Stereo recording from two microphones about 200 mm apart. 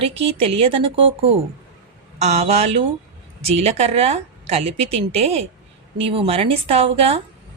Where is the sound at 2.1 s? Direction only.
35° right (ahead or behind).